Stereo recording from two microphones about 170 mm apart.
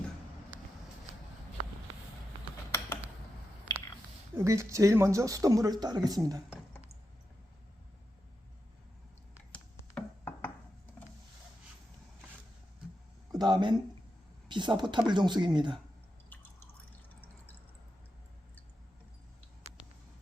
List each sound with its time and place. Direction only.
4.4 s speech: 20° right (ahead or behind)
9.5 s a sound: 10° left (ahead or behind)
13.3 s speech: 25° right (ahead or behind)